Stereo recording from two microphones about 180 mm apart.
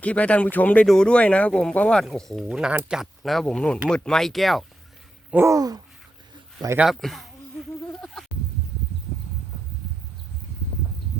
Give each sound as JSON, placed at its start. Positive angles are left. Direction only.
{"t": 0.0, "sound": "speech", "side_deg": 5}
{"t": 5.3, "sound": "a sound", "side_deg": -15}
{"t": 6.7, "sound": "speech", "side_deg": 0}